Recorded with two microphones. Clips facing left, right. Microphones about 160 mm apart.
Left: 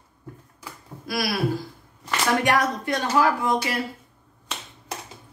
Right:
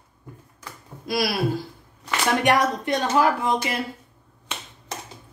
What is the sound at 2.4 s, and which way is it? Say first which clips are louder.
A woman's voice: right 2 dB; 20° right (ahead or behind).